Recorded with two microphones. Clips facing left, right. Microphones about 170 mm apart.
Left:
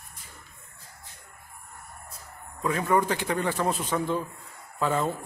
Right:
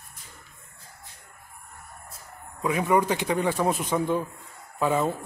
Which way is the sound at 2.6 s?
15° right (ahead or behind).